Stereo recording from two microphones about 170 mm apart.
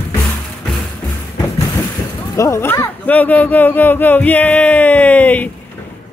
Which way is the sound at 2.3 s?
15° left (ahead or behind).